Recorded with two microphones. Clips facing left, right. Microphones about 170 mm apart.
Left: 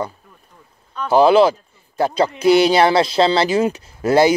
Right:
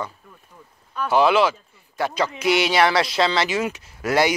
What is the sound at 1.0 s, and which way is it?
Speech, 35° left (ahead or behind).